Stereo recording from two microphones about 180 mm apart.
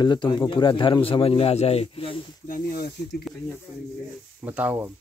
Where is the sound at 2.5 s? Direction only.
60° left (ahead or behind).